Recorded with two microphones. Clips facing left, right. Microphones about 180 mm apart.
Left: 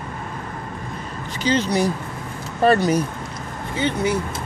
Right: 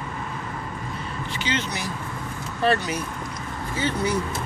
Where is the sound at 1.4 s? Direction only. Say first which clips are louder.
Left 11 dB; 35° left (ahead or behind).